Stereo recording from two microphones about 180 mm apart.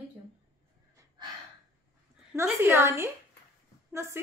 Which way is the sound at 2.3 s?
15° right (ahead or behind).